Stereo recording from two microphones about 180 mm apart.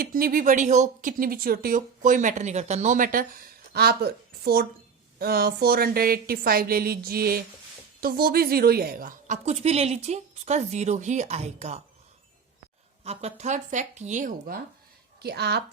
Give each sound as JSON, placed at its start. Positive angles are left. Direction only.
{"t": 0.0, "sound": "a woman's voice", "side_deg": -55}
{"t": 13.1, "sound": "a woman's voice", "side_deg": -35}
{"t": 15.2, "sound": "a woman's voice", "side_deg": -65}